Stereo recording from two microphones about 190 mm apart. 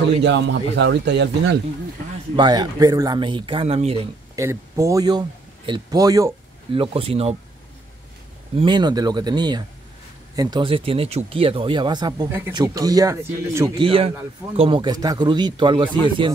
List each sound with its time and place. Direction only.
0.2 s speech: 70° right (ahead or behind)
2.3 s speech: 25° right (ahead or behind)
4.4 s speech: 15° right (ahead or behind)
6.7 s speech: 30° right (ahead or behind)
8.5 s speech: 25° right (ahead or behind)
13.7 s speech: 30° right (ahead or behind)